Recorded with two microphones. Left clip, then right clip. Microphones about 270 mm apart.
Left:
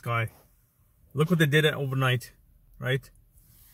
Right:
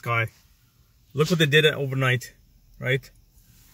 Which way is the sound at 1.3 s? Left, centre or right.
Centre.